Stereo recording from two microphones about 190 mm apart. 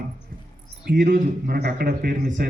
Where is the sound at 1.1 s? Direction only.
55° right (ahead or behind).